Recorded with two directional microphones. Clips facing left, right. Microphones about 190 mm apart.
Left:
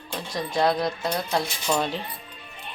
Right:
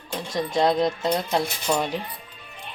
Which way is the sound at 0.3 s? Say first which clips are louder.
Right 2 dB; 20° right (ahead or behind).